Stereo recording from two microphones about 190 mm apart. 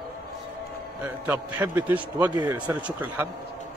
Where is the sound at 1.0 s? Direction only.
10° right (ahead or behind).